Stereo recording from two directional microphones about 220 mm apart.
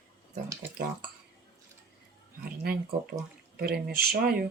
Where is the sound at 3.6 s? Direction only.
45° right (ahead or behind).